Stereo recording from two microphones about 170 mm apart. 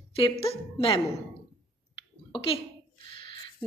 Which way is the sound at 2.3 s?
35° left (ahead or behind).